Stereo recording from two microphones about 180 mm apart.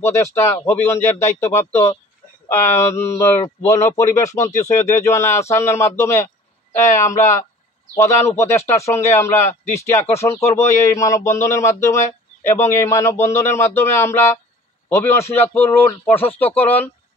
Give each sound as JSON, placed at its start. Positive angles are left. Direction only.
{"t": 0.0, "sound": "speech", "side_deg": 15}